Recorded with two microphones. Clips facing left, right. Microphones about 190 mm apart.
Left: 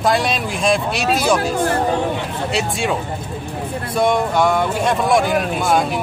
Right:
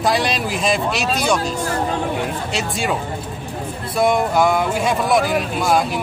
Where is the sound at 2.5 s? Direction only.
Centre (ahead or behind).